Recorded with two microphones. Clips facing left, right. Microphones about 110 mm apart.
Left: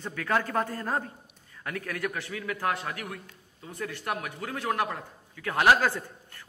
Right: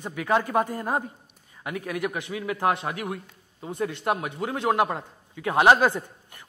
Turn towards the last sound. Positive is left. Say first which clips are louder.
# right 4 dB
turn(degrees=-20)  # may be behind; listen again after turning